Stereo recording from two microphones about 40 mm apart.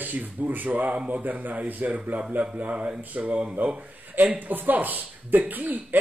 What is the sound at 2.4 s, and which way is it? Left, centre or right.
A man's voice, right.